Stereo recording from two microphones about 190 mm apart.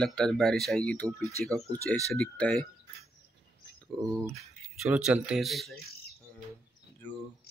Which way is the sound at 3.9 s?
5° left (ahead or behind).